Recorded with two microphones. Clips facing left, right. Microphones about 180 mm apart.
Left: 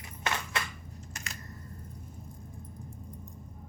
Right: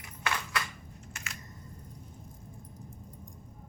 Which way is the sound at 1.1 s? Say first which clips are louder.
Left 1 dB; 40° left (ahead or behind).